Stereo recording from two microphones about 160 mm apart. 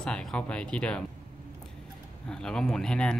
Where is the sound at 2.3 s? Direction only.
5° left (ahead or behind).